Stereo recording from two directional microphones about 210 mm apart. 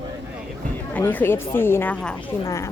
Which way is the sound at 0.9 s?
10° left (ahead or behind).